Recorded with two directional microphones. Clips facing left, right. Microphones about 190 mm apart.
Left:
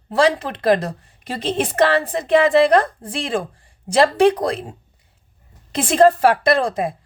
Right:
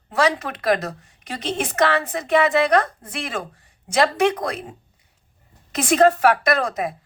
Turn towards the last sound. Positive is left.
turn(degrees=30)  # may be behind; listen again after turning